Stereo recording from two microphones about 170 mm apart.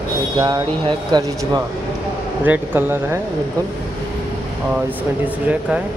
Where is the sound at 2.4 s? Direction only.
10° right (ahead or behind).